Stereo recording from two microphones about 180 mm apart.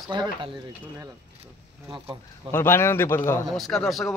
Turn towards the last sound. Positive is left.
turn(degrees=0)  # may be behind; listen again after turning